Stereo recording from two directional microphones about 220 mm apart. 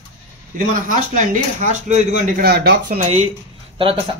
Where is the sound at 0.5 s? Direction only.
35° right (ahead or behind).